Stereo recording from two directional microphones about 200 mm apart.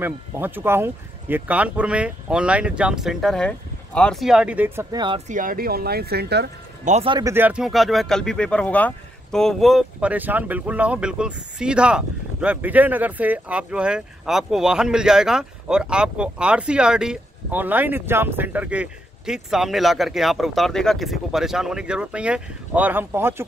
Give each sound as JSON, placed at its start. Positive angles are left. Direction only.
{"t": 0.0, "sound": "speech", "side_deg": -10}
{"t": 5.3, "sound": "speech", "side_deg": -45}
{"t": 6.8, "sound": "speech", "side_deg": -35}